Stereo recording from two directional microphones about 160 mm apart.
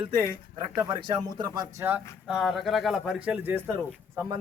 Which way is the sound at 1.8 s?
10° right (ahead or behind).